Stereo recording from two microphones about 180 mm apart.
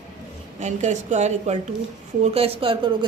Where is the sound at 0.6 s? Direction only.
40° right (ahead or behind).